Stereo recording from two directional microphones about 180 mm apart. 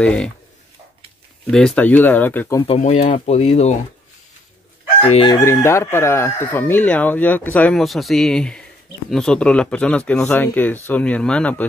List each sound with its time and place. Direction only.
0.0 s speech: 5° left (ahead or behind)
1.5 s speech: 5° left (ahead or behind)
2.6 s speech: 35° left (ahead or behind)
5.0 s chicken: 30° left (ahead or behind)
5.4 s speech: 15° left (ahead or behind)